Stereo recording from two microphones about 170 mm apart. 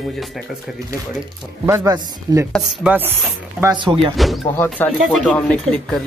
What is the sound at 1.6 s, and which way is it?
Speech, 20° right (ahead or behind).